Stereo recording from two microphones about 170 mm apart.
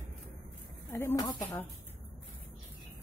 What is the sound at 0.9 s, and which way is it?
Speech, 20° left (ahead or behind).